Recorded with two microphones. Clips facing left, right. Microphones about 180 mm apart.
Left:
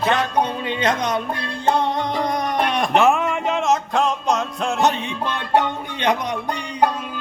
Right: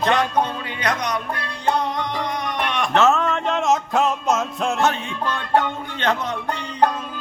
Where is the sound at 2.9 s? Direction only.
15° left (ahead or behind); by 4.7 s 5° right (ahead or behind).